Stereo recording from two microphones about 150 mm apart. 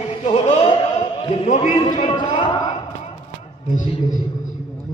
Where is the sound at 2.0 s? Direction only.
30° left (ahead or behind).